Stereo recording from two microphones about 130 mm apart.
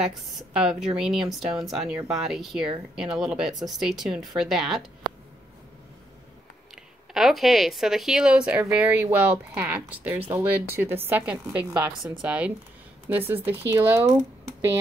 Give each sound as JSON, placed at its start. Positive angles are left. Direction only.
{"t": 0.0, "sound": "speech", "side_deg": -5}
{"t": 6.7, "sound": "speech", "side_deg": 0}